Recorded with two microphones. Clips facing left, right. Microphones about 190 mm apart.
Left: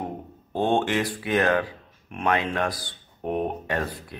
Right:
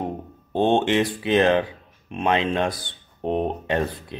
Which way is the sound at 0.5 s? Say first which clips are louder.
Right 4 dB; 20° right (ahead or behind).